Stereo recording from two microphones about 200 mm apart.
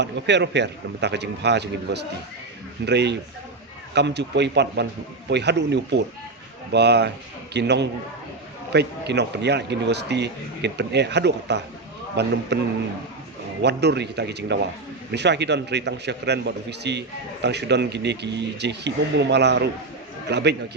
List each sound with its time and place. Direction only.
0.0 s speech: 60° right (ahead or behind)
13.6 s speech: 55° right (ahead or behind)